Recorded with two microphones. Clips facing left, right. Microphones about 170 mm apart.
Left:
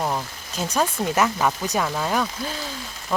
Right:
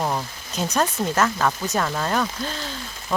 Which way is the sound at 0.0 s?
Centre (ahead or behind).